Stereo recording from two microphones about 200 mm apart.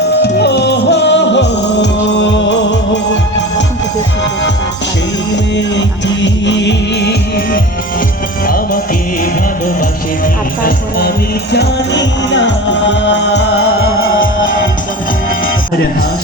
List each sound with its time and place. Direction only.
0.2 s music: 60° left (ahead or behind)
5.5 s music: 60° left (ahead or behind); by 8.8 s 45° left (ahead or behind)
10.6 s music: 50° left (ahead or behind)
11.5 s music: 65° left (ahead or behind)